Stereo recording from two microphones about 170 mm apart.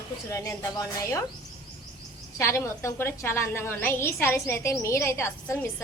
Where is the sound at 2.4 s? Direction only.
15° left (ahead or behind).